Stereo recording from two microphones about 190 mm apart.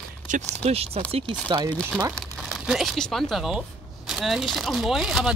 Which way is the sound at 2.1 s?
Centre (ahead or behind).